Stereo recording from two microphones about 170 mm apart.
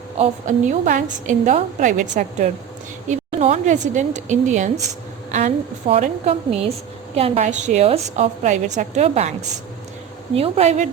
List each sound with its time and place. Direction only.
0.2 s a woman's voice: 45° right (ahead or behind)
5.9 s a woman's voice: 40° right (ahead or behind)
10.3 s a woman's voice: 35° right (ahead or behind)